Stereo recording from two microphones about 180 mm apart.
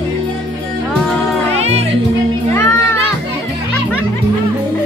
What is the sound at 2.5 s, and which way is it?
Music, 15° left (ahead or behind).